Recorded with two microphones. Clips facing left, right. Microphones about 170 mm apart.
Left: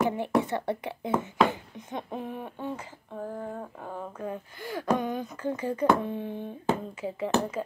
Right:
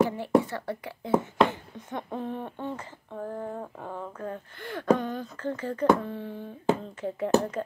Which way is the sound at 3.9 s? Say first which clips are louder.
Left 1 dB; 10° left (ahead or behind).